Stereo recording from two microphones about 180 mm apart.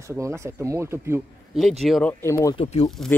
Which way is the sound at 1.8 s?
5° left (ahead or behind).